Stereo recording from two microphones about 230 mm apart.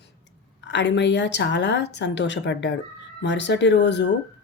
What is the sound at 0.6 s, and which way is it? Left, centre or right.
Speech, left.